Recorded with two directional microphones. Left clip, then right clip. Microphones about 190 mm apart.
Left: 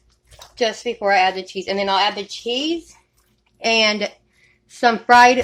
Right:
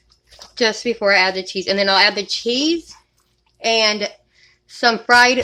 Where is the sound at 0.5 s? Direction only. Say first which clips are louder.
Right 3 dB; 25° right (ahead or behind).